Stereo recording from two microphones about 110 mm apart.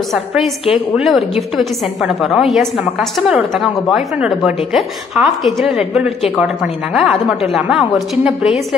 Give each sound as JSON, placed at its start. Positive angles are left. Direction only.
{"t": 0.1, "sound": "a woman's voice", "side_deg": 0}